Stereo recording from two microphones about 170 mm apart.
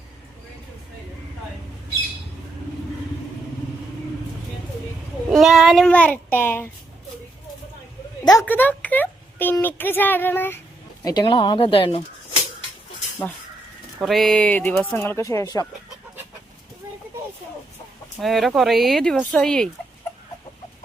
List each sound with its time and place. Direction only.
5.3 s speech: centre (ahead or behind)
8.2 s a woman's voice: 20° left (ahead or behind)
8.4 s speech: 10° left (ahead or behind)
11.0 s speech: 25° left (ahead or behind)
14.0 s speech: centre (ahead or behind); by 15.6 s 20° left (ahead or behind)
18.2 s speech: centre (ahead or behind)